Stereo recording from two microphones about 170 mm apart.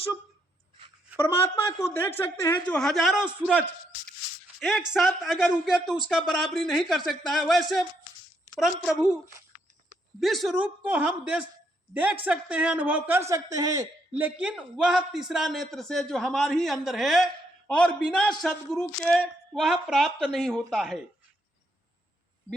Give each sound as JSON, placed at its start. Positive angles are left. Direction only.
{"t": 1.2, "sound": "a woman's voice", "side_deg": 15}
{"t": 4.6, "sound": "a man's voice", "side_deg": -5}
{"t": 10.2, "sound": "speech", "side_deg": 0}
{"t": 14.1, "sound": "a man's voice", "side_deg": -10}